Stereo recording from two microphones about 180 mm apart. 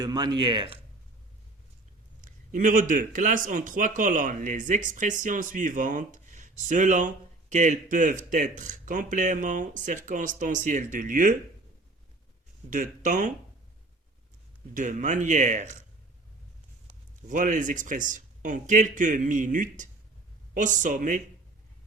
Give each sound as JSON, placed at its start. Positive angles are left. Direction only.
{"t": 0.0, "sound": "speech", "side_deg": -25}
{"t": 2.2, "sound": "speech", "side_deg": -45}
{"t": 12.7, "sound": "speech", "side_deg": -45}
{"t": 14.7, "sound": "speech", "side_deg": -45}
{"t": 17.2, "sound": "speech", "side_deg": -45}